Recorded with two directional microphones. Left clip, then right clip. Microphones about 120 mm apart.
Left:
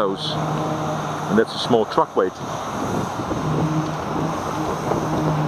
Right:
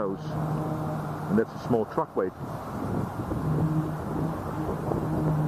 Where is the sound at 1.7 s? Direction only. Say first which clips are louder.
Left 8 dB; 45° left (ahead or behind).